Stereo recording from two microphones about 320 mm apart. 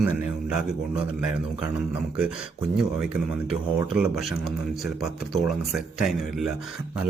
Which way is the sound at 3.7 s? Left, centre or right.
Centre.